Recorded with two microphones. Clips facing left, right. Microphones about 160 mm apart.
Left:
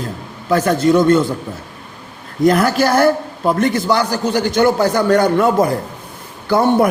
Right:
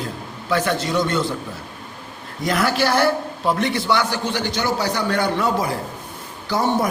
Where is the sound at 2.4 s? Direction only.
50° left (ahead or behind).